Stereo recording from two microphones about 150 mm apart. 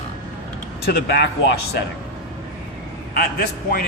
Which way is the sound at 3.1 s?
90° left.